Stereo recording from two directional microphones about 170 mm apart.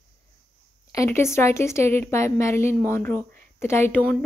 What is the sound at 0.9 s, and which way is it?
A woman's voice, 15° left (ahead or behind).